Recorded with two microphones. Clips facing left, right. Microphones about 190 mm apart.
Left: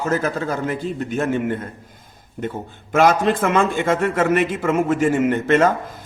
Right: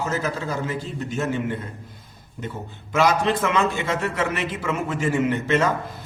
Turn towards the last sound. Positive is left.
turn(degrees=50)  # may be behind; listen again after turning